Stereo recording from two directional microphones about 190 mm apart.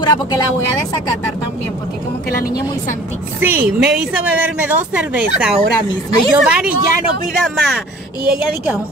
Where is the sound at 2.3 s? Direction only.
50° left (ahead or behind).